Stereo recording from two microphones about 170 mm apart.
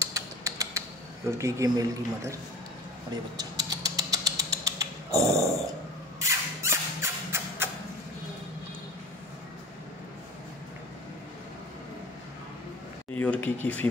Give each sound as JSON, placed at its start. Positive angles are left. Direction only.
{"t": 0.0, "sound": "typing", "side_deg": -20}
{"t": 1.4, "sound": "a man's voice", "side_deg": -20}
{"t": 3.3, "sound": "rodents", "side_deg": -20}
{"t": 6.1, "sound": "a sound", "side_deg": -15}
{"t": 13.1, "sound": "speech", "side_deg": 10}